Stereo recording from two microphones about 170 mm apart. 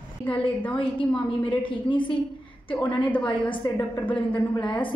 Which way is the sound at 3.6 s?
25° left (ahead or behind).